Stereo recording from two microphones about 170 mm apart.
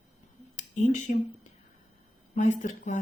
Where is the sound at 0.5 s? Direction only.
45° left (ahead or behind).